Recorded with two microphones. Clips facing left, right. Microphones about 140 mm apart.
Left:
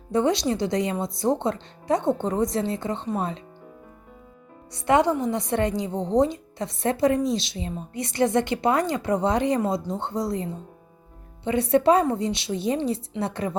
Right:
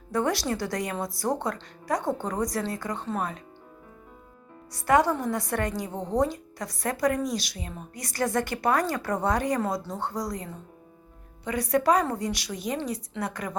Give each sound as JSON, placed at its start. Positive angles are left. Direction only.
{"t": 0.1, "sound": "a woman's voice", "side_deg": 20}
{"t": 4.7, "sound": "a woman's voice", "side_deg": 25}